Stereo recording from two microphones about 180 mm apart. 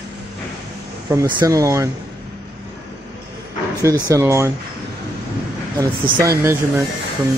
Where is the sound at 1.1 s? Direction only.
20° right (ahead or behind).